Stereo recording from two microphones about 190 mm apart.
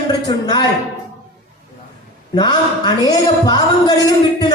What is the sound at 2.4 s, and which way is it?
A man's voice, 20° left (ahead or behind).